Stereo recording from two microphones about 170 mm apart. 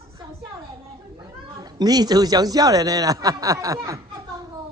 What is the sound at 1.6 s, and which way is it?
Speech, 25° right (ahead or behind).